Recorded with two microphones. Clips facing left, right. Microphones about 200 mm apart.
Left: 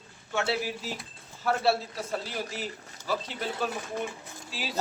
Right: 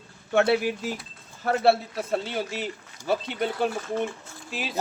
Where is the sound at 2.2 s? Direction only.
65° right (ahead or behind).